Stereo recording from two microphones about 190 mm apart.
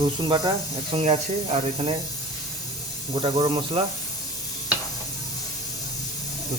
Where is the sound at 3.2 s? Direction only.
30° right (ahead or behind).